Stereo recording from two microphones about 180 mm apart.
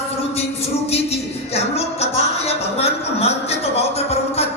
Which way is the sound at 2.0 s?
35° left (ahead or behind).